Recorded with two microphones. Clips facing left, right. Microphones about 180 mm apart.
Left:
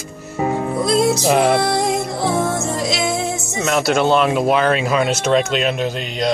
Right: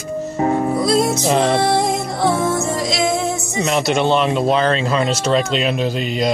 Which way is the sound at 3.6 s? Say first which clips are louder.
Left 1 dB; centre (ahead or behind).